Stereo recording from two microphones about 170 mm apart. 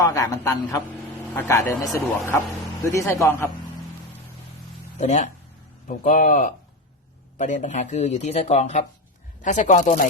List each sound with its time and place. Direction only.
0.0 s speech: 20° left (ahead or behind)
4.9 s speech: 45° left (ahead or behind)